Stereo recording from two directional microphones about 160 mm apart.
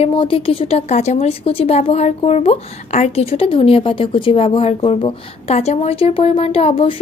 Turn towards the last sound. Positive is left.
turn(degrees=35)  # may be behind; listen again after turning